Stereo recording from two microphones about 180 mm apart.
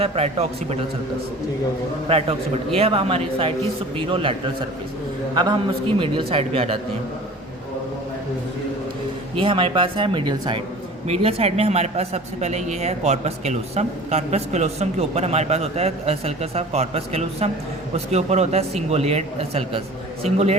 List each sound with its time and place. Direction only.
0.0 s speech: 35° right (ahead or behind)
2.0 s speech: 30° right (ahead or behind)
9.4 s speech: 30° right (ahead or behind)